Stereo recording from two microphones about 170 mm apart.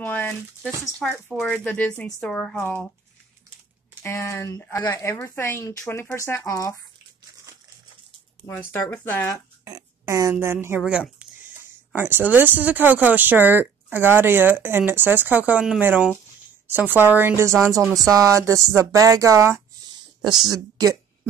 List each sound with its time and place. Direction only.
0.0 s a sound: 10° left (ahead or behind)
1.0 s speech: 5° left (ahead or behind)
4.0 s speech: 15° left (ahead or behind)
8.5 s speech: 10° left (ahead or behind)
9.7 s a woman's voice: 20° right (ahead or behind)